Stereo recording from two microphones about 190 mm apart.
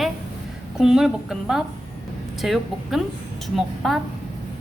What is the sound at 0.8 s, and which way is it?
A woman's voice, 5° right (ahead or behind).